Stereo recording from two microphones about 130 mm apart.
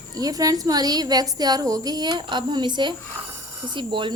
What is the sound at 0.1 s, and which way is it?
A woman's voice, 30° right (ahead or behind).